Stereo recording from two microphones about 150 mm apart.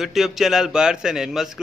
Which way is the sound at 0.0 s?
Centre (ahead or behind).